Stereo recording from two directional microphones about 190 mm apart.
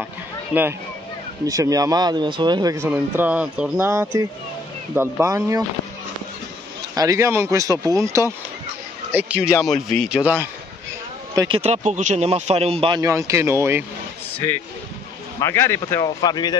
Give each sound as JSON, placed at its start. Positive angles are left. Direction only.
{"t": 0.5, "sound": "speech", "side_deg": -5}
{"t": 1.4, "sound": "speech", "side_deg": -20}
{"t": 7.0, "sound": "a man's voice", "side_deg": -15}
{"t": 11.3, "sound": "speech", "side_deg": -25}
{"t": 13.0, "sound": "speech", "side_deg": -15}
{"t": 15.4, "sound": "speech", "side_deg": 15}